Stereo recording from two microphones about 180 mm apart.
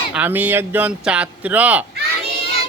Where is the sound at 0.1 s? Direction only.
10° right (ahead or behind).